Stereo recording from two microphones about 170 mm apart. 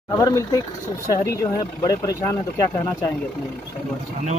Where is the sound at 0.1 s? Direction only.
20° left (ahead or behind).